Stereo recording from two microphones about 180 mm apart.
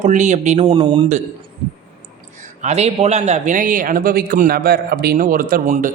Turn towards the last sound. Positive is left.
turn(degrees=-45)  # may be behind; listen again after turning